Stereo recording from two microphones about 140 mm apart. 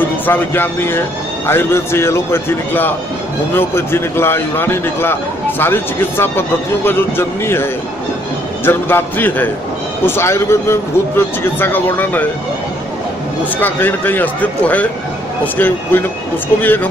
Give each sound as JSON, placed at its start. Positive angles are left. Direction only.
{"t": 0.3, "sound": "speech", "side_deg": 15}
{"t": 8.6, "sound": "speech", "side_deg": 15}
{"t": 13.6, "sound": "speech", "side_deg": 15}